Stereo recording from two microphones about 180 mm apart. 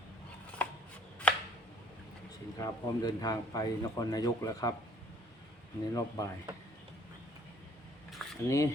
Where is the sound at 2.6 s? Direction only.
20° left (ahead or behind).